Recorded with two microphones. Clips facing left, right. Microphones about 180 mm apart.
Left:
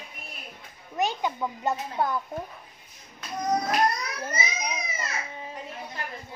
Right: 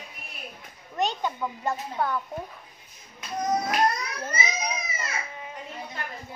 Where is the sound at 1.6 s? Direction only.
15° left (ahead or behind).